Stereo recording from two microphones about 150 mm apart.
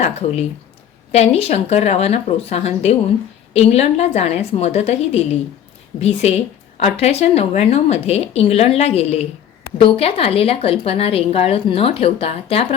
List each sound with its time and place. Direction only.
0.0 s a woman's voice: 45° left (ahead or behind)